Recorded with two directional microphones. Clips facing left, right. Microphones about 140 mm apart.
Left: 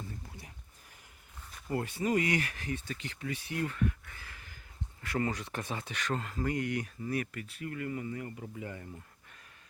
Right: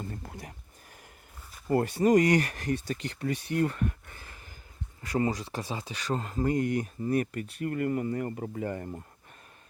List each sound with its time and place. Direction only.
0.0 s a sound: 60° right (ahead or behind)
1.7 s speech: 40° right (ahead or behind)
5.2 s speech: 30° right (ahead or behind); by 9.0 s 50° right (ahead or behind)